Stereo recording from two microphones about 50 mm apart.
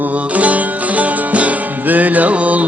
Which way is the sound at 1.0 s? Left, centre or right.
Right.